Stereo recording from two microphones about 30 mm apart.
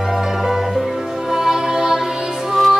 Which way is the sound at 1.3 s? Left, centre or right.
Centre.